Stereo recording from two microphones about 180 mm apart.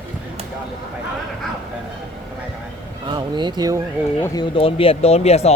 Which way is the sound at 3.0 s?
25° right (ahead or behind).